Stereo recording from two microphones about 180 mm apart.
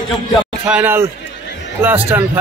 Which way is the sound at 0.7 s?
10° right (ahead or behind).